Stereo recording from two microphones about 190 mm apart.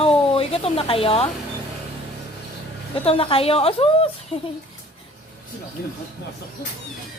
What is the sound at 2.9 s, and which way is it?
Speech, 30° left (ahead or behind).